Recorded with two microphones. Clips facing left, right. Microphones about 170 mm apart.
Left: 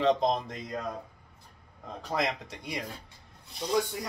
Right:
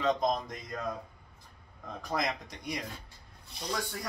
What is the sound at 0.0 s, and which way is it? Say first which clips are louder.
Speech: left 3 dB; 30° left (ahead or behind).